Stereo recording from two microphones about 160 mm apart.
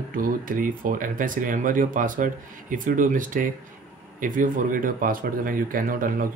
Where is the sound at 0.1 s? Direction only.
60° right (ahead or behind).